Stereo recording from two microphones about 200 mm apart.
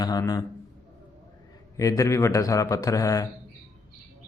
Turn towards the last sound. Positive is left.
turn(degrees=15)  # may be behind; listen again after turning